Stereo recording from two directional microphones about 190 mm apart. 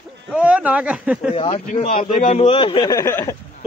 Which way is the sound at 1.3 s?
30° left (ahead or behind).